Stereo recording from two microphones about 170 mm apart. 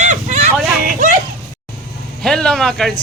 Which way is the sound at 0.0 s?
45° right (ahead or behind).